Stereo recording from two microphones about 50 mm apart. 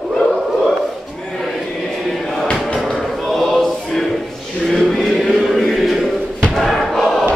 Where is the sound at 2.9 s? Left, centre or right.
Centre.